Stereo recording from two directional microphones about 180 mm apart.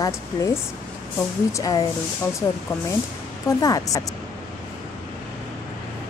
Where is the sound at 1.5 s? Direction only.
20° left (ahead or behind).